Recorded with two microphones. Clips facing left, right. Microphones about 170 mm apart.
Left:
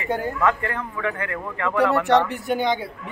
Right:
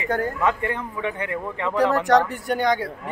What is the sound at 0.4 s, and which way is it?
A man's voice, 20° right (ahead or behind).